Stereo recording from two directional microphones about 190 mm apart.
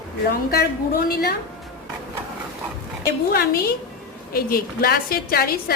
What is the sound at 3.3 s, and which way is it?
A woman's voice, 55° left (ahead or behind).